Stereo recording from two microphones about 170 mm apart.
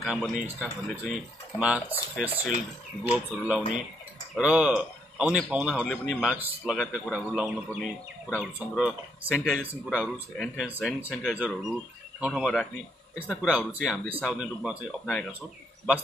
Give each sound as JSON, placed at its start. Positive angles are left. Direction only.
{"t": 0.0, "sound": "speech", "side_deg": 0}